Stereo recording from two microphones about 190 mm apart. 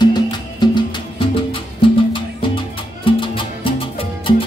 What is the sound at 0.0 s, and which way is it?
Music, 20° left (ahead or behind).